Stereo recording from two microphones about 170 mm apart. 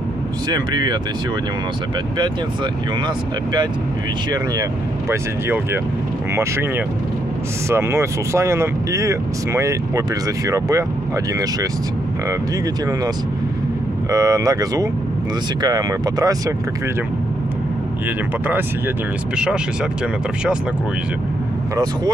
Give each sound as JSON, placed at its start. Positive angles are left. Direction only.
{"t": 0.5, "sound": "speech", "side_deg": -25}
{"t": 5.1, "sound": "speech", "side_deg": -15}
{"t": 7.7, "sound": "speech", "side_deg": -15}
{"t": 14.1, "sound": "speech", "side_deg": -20}
{"t": 19.3, "sound": "speech", "side_deg": -5}